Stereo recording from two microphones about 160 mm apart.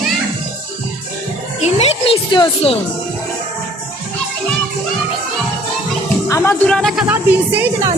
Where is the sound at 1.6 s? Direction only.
40° left (ahead or behind).